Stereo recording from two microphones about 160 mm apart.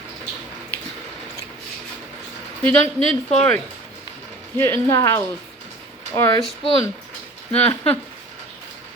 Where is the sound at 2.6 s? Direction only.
5° left (ahead or behind).